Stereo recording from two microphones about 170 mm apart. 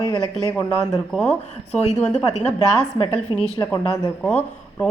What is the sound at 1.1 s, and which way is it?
Speech, 10° left (ahead or behind).